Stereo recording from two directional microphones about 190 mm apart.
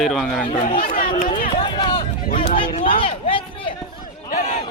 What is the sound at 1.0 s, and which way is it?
Chatter, 30° left (ahead or behind).